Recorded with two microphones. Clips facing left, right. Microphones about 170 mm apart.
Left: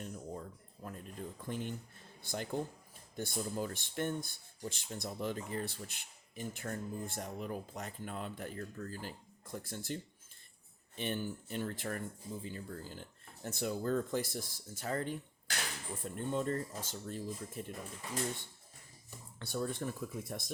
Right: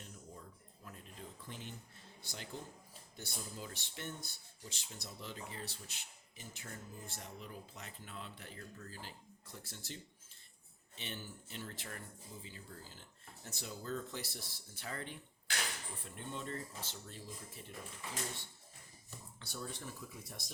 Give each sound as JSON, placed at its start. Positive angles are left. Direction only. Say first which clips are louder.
{"t": 0.0, "sound": "a sound", "louder": "left 10 dB", "side_deg": 55}
{"t": 1.4, "sound": "speech", "louder": "left 13 dB", "side_deg": 50}
{"t": 19.4, "sound": "speech", "louder": "left 10 dB", "side_deg": 55}